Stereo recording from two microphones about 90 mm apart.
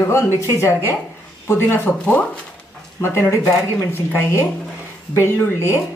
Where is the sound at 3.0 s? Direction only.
30° left (ahead or behind).